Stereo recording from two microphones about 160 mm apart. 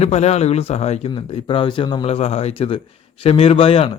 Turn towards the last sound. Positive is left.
turn(degrees=35)  # may be behind; listen again after turning